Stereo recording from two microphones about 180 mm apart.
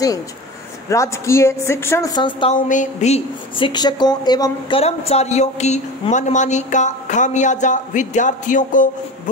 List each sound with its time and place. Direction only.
0.8 s a woman's voice: 15° left (ahead or behind)
2.5 s a woman's voice: 45° left (ahead or behind)